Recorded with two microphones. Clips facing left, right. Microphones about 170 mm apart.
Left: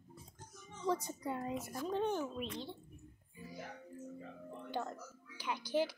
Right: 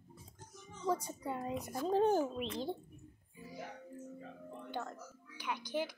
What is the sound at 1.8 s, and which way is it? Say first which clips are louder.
Speech: right 6 dB; 40° right (ahead or behind).